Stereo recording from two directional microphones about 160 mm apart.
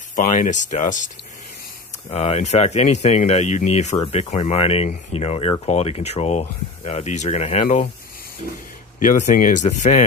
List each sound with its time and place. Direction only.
0.1 s speech: 50° left (ahead or behind)
2.0 s speech: 40° left (ahead or behind)
9.0 s speech: 55° left (ahead or behind)